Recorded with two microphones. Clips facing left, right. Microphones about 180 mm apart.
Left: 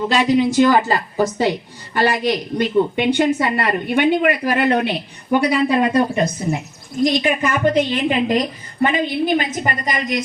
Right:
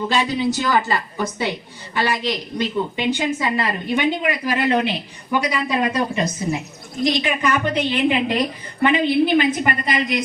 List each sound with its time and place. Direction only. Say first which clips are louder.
0.5 s a woman's voice: left 6 dB; 30° left (ahead or behind)
2.0 s a woman's voice: left 4 dB; 50° left (ahead or behind)